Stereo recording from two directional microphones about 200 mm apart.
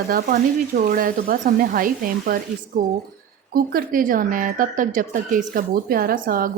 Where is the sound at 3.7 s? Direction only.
45° right (ahead or behind).